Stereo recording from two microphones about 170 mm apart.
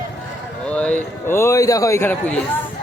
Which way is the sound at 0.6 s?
5° left (ahead or behind).